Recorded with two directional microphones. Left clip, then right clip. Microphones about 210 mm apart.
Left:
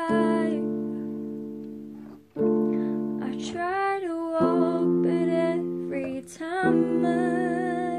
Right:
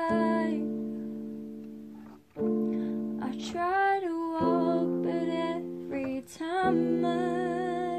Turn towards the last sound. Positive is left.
turn(degrees=-15)  # may be behind; listen again after turning